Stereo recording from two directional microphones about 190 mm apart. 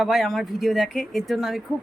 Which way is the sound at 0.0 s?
Centre (ahead or behind).